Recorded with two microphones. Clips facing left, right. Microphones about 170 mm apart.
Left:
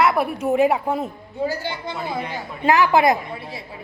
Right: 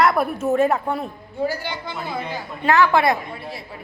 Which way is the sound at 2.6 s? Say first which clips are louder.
Left 1 dB; 20° left (ahead or behind).